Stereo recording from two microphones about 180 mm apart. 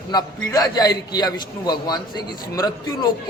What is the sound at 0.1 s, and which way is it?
A man's voice, 20° left (ahead or behind).